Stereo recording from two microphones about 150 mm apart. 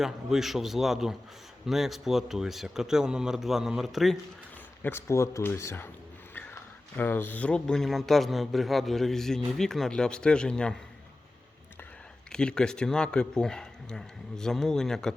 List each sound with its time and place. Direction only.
0.0 s speech: centre (ahead or behind)
4.8 s speech: 15° left (ahead or behind)
12.3 s speech: 5° left (ahead or behind)